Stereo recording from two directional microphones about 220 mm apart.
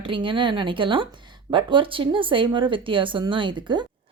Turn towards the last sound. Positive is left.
turn(degrees=-20)  # may be behind; listen again after turning